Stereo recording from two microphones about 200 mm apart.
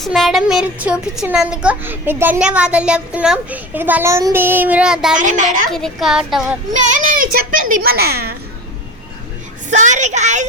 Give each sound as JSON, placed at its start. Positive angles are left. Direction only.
{"t": 0.0, "sound": "speech", "side_deg": 0}
{"t": 5.1, "sound": "a woman's voice", "side_deg": -40}
{"t": 5.7, "sound": "speech", "side_deg": 0}
{"t": 6.7, "sound": "a child's voice", "side_deg": -40}
{"t": 9.6, "sound": "a woman's voice", "side_deg": -40}